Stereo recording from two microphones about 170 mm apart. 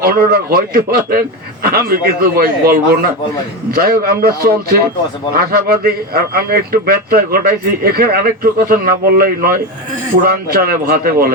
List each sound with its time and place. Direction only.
0.0 s a man's voice: 60° right (ahead or behind)